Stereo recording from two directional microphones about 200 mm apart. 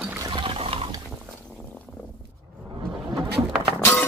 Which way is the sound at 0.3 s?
25° right (ahead or behind).